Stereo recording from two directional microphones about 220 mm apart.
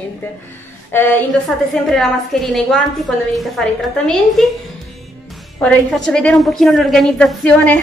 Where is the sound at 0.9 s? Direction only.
10° left (ahead or behind).